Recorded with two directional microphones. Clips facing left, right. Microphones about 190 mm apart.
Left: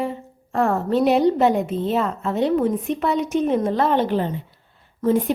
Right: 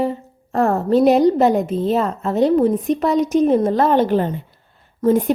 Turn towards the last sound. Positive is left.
turn(degrees=-45)  # may be behind; listen again after turning